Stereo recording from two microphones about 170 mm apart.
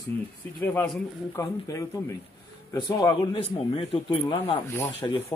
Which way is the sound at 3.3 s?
30° left (ahead or behind).